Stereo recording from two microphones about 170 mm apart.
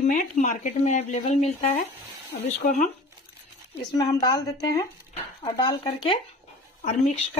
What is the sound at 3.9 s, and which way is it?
Speech, 20° left (ahead or behind).